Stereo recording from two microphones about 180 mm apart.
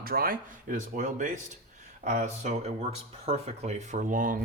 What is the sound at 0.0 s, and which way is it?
Speech, 55° right (ahead or behind).